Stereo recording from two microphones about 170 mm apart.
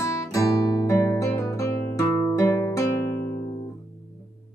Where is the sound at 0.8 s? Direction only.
15° left (ahead or behind).